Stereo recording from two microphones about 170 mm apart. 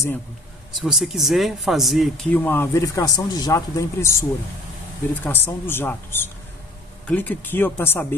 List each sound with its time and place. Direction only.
0.7 s speech: centre (ahead or behind)
2.3 s speech: 15° left (ahead or behind)